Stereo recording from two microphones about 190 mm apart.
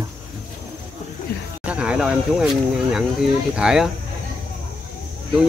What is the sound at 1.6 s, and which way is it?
Speech, 5° right (ahead or behind).